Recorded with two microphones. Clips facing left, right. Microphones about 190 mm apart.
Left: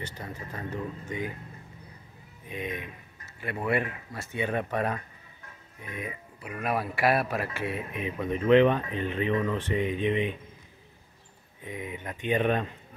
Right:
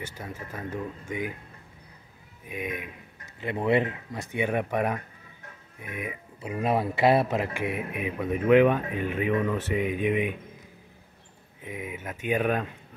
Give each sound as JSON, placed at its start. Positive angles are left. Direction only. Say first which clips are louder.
{"t": 0.0, "sound": "speech", "louder": "right 1 dB", "side_deg": -10}
{"t": 2.4, "sound": "speech", "louder": "right 1 dB", "side_deg": -10}
{"t": 3.3, "sound": "speech", "louder": "right 4 dB", "side_deg": -20}
{"t": 6.4, "sound": "speech", "louder": "right 4 dB", "side_deg": -25}
{"t": 11.6, "sound": "speech", "louder": "right 1 dB", "side_deg": -5}